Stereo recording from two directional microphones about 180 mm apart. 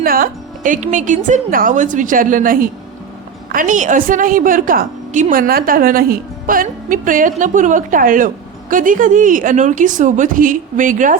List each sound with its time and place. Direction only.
0.0 s a woman's voice: 55° right (ahead or behind)